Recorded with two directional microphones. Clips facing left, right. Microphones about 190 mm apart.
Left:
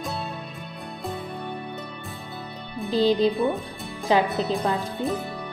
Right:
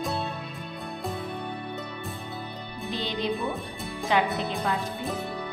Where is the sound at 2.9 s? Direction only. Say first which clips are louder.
Left 11 dB; 35° left (ahead or behind).